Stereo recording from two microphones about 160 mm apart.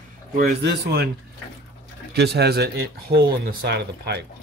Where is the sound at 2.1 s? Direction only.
90° right.